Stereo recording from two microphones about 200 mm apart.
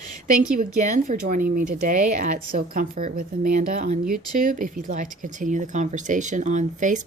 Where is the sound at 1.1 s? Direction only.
40° right (ahead or behind).